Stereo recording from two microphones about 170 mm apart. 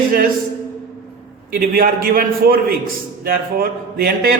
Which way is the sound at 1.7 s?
60° right (ahead or behind).